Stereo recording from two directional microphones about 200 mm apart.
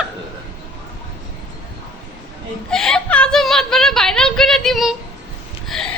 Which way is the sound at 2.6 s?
5° left (ahead or behind).